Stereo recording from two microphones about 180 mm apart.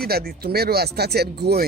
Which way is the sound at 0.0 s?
60° right (ahead or behind).